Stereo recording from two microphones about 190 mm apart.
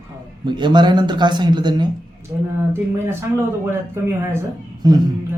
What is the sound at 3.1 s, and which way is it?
A man's voice, 15° right (ahead or behind).